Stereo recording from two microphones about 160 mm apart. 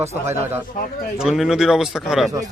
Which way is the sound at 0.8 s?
55° left (ahead or behind).